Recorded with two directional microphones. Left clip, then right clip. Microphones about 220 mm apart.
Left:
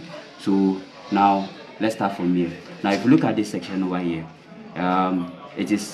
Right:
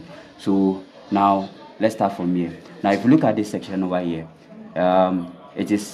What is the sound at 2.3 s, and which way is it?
Speech, 60° right (ahead or behind).